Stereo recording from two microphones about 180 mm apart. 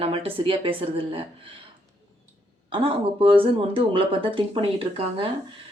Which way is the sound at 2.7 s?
30° right (ahead or behind).